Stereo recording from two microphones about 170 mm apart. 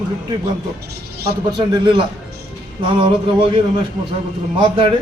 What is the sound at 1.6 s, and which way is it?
A man's voice, 30° right (ahead or behind).